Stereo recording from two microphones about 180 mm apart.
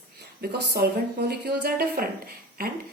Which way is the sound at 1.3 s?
60° right (ahead or behind).